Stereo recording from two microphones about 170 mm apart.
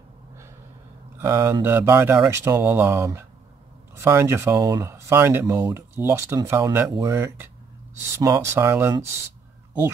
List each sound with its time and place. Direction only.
1.1 s speech: 15° right (ahead or behind)